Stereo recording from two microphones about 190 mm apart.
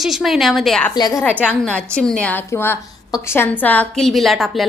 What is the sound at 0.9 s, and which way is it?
Speech, 20° left (ahead or behind).